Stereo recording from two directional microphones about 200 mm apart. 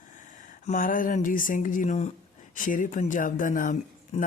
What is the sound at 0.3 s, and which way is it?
Speech, 40° left (ahead or behind).